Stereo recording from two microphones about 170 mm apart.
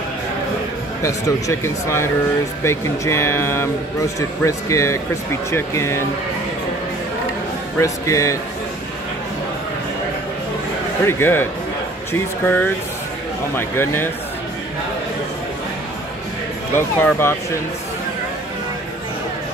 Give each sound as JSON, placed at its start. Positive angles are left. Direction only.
{"t": 1.0, "sound": "speech", "side_deg": 15}
{"t": 7.8, "sound": "speech", "side_deg": 20}
{"t": 11.1, "sound": "speech", "side_deg": 15}
{"t": 16.7, "sound": "speech", "side_deg": 15}